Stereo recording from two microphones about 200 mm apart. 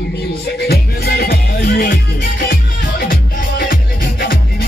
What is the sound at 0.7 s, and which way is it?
Music, 55° left (ahead or behind).